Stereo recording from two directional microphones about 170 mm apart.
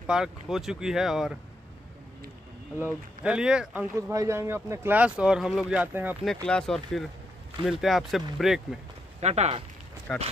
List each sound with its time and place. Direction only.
0.0 s speech: 5° right (ahead or behind)
3.3 s speech: 5° right (ahead or behind)
3.9 s speech: 15° right (ahead or behind)
6.2 s speech: 5° left (ahead or behind)
9.2 s speech: 40° right (ahead or behind)
10.1 s speech: centre (ahead or behind)